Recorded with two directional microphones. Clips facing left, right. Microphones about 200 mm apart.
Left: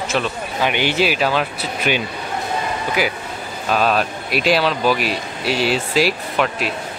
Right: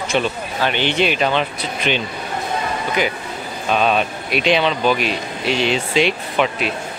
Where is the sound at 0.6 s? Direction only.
10° left (ahead or behind).